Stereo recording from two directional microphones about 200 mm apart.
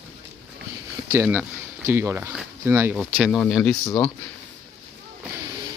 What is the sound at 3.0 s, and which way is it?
Speech, centre (ahead or behind).